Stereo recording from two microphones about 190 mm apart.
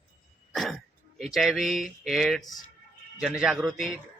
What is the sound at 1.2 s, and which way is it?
Speech, centre (ahead or behind).